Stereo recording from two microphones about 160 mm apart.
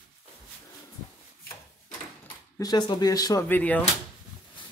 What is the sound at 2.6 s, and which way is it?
Speech, 25° left (ahead or behind).